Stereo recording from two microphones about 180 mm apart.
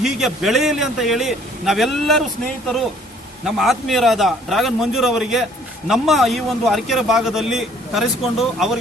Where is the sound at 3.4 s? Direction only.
Centre (ahead or behind).